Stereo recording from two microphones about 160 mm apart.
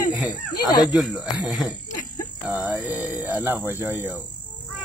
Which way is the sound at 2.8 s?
10° right (ahead or behind).